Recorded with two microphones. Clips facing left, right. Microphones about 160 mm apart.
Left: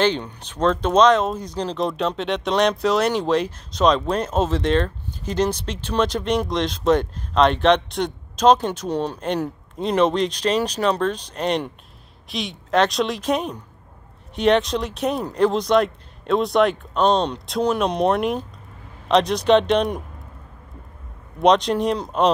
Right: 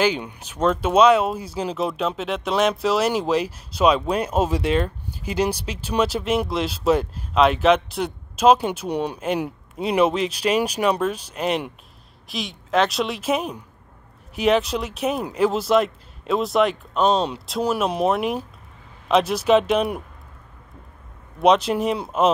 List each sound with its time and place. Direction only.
0.0 s speech: 10° right (ahead or behind)
21.4 s speech: 5° right (ahead or behind)